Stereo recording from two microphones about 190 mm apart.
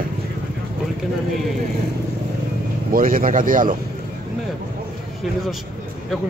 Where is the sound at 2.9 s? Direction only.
45° right (ahead or behind).